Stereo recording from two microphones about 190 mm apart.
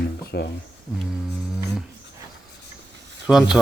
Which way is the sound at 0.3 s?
60° left (ahead or behind).